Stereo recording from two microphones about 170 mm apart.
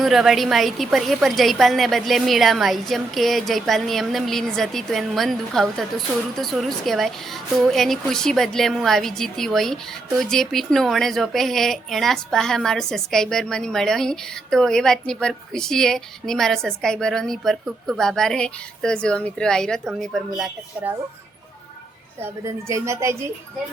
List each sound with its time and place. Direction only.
0.0 s a woman's voice: centre (ahead or behind)
22.2 s a woman's voice: 15° right (ahead or behind)